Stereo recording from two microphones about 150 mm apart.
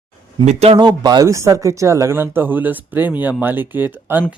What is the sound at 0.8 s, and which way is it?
Speech, 30° right (ahead or behind).